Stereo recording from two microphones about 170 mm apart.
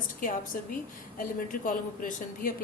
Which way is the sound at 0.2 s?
50° left (ahead or behind).